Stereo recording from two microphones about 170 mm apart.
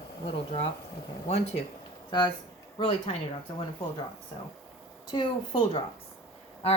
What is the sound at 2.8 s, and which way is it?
Speech, 35° left (ahead or behind).